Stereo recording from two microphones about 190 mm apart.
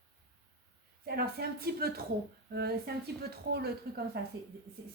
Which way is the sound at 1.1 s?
55° right (ahead or behind).